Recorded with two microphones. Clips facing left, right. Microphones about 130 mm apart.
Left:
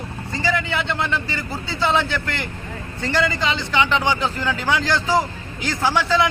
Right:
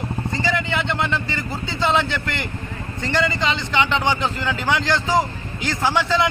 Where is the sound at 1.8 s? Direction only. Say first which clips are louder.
Even; 15° right (ahead or behind).